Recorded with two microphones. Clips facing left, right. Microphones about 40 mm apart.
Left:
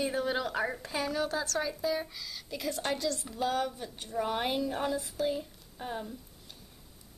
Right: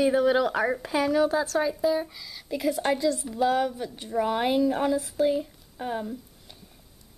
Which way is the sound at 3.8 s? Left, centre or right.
Centre.